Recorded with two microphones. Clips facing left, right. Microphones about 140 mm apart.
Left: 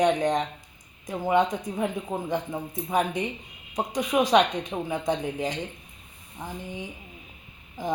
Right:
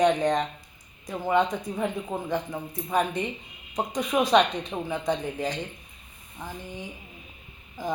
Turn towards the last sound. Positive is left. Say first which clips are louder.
# left 1 dB
turn(degrees=20)  # may be behind; listen again after turning